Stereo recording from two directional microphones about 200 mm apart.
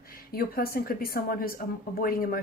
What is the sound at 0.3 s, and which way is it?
A woman's voice, 50° left (ahead or behind).